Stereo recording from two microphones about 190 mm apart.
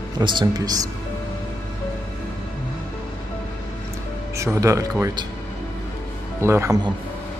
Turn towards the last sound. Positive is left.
turn(degrees=-20)  # may be behind; listen again after turning